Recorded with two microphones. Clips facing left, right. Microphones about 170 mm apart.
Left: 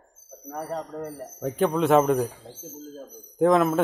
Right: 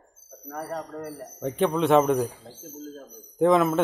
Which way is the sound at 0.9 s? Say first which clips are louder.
Left 2 dB; 20° left (ahead or behind).